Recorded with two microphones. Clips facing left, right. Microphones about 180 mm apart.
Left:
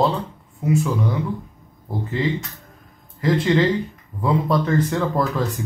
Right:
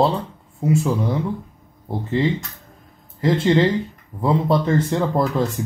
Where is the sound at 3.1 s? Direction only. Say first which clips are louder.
Right 1 dB; 25° right (ahead or behind).